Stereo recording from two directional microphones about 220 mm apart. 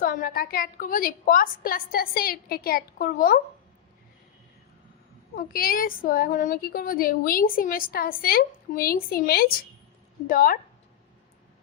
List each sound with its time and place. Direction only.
0.0 s a woman's voice: 40° left (ahead or behind)
5.4 s a woman's voice: 40° left (ahead or behind)